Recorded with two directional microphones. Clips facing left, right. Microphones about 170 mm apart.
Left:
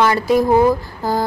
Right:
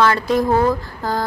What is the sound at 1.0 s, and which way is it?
Speech, 5° left (ahead or behind).